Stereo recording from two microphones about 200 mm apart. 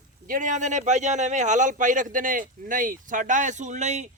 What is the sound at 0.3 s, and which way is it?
A man's voice, 40° right (ahead or behind).